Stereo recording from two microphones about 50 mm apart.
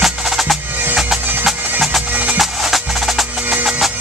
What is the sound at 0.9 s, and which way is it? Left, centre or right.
Bagpipes, centre.